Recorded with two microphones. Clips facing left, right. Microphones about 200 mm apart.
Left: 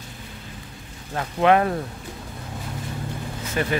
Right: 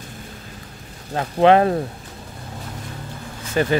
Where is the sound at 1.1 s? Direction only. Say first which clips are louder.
Right 4 dB; 30° right (ahead or behind).